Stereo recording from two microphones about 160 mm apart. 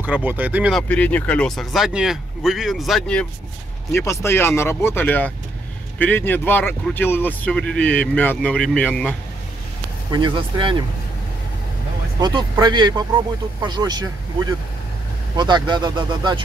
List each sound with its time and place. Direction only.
0.0 s speech: 10° right (ahead or behind)
0.7 s speech: 10° left (ahead or behind)
3.9 s speech: 15° left (ahead or behind)
10.1 s speech: 30° right (ahead or behind)
12.2 s speech: 25° right (ahead or behind)
15.3 s speech: 30° right (ahead or behind)